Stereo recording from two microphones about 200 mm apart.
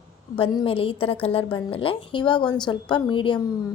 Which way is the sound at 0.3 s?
25° left (ahead or behind).